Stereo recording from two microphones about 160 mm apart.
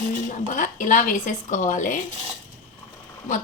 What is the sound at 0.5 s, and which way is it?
Speech, 55° left (ahead or behind).